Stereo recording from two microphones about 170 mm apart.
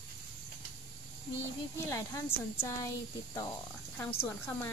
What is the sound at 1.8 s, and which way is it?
Speech, 15° left (ahead or behind).